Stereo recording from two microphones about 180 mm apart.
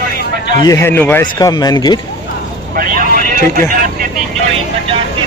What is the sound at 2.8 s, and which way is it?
Vehicle, 50° right (ahead or behind).